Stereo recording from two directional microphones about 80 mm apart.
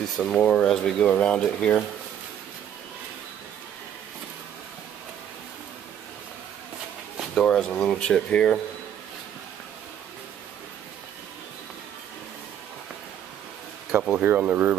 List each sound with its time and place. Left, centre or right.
0.3 s speech: centre
7.4 s speech: centre
13.9 s speech: centre